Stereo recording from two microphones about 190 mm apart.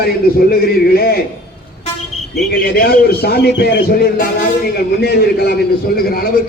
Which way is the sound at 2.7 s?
55° left (ahead or behind).